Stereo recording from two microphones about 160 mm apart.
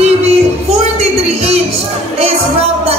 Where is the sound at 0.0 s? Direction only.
40° right (ahead or behind).